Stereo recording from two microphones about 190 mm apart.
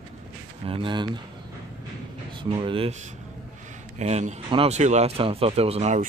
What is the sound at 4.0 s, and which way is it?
Speech, 35° right (ahead or behind).